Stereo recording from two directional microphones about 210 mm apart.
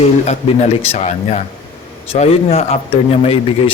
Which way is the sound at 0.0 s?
30° left (ahead or behind).